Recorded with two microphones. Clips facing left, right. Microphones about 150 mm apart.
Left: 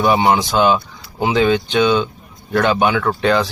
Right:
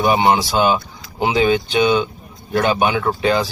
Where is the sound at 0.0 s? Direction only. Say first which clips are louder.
Left 1 dB; 15° right (ahead or behind).